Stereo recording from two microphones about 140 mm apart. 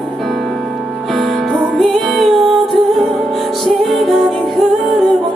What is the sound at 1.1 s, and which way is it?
Music, centre (ahead or behind).